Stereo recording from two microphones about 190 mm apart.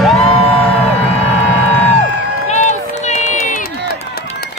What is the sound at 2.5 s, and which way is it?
Run, 40° left (ahead or behind).